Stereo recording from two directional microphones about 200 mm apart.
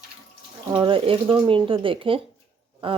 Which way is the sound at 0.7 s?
25° right (ahead or behind).